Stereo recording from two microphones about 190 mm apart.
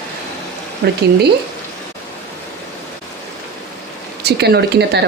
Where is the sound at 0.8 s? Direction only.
60° right (ahead or behind).